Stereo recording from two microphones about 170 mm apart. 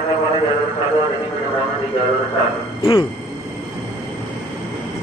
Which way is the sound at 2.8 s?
30° left (ahead or behind).